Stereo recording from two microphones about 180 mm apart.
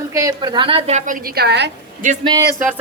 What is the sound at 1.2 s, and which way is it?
Speech, 65° right (ahead or behind).